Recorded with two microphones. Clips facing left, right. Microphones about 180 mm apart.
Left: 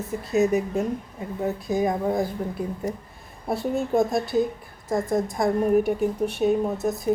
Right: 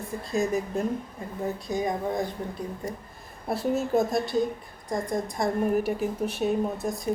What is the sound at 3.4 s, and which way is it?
Speech, centre (ahead or behind).